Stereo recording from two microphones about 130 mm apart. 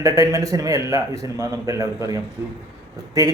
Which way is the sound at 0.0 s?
25° right (ahead or behind).